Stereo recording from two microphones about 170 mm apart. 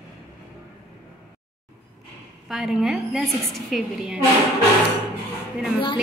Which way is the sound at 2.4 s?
Centre (ahead or behind).